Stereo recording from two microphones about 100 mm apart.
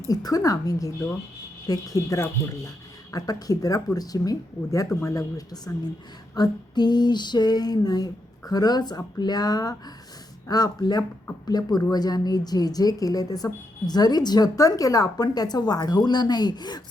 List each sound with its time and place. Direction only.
0.1 s a woman's voice: 40° left (ahead or behind)
6.3 s female singing: 45° left (ahead or behind)
10.5 s a woman's voice: 40° left (ahead or behind)